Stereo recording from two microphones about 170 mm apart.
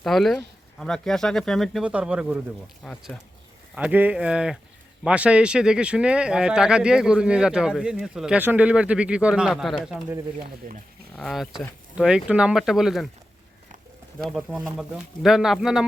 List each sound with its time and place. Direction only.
0.0 s speech: centre (ahead or behind)
2.8 s speech: 5° left (ahead or behind)
3.8 s speech: 10° right (ahead or behind)
10.6 s speech: 55° right (ahead or behind)
11.1 s speech: 5° left (ahead or behind)
14.3 s speech: 5° right (ahead or behind)